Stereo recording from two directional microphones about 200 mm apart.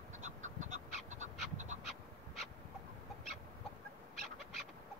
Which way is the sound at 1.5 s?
35° right (ahead or behind).